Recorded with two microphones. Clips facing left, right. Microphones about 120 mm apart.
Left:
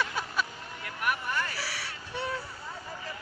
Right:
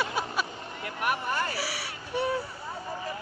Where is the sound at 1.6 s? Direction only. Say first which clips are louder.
Right 4 dB; 10° right (ahead or behind).